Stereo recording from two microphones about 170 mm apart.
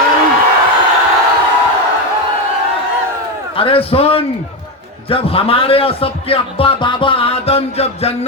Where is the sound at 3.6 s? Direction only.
30° left (ahead or behind).